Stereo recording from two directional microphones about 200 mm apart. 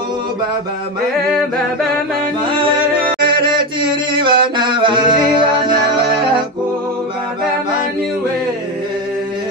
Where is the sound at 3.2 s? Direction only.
25° right (ahead or behind).